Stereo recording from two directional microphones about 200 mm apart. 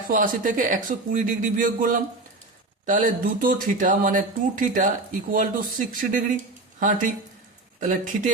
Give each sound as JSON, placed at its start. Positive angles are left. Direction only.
{"t": 0.1, "sound": "speech", "side_deg": -40}